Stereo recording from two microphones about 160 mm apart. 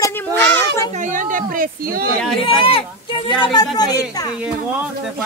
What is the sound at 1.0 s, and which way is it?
A woman's voice, 55° right (ahead or behind).